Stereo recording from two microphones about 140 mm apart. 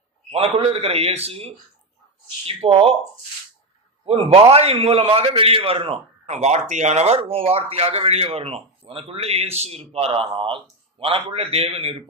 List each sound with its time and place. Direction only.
0.3 s speech: 45° right (ahead or behind)
4.0 s speech: 45° right (ahead or behind)